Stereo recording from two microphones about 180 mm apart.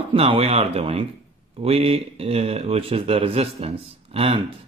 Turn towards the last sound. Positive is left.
turn(degrees=-35)  # may be behind; listen again after turning